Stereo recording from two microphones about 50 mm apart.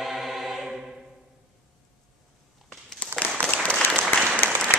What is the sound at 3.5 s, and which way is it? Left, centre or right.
Applause, left.